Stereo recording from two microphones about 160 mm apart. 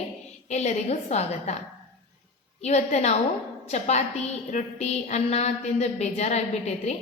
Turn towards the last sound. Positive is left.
turn(degrees=45)  # may be behind; listen again after turning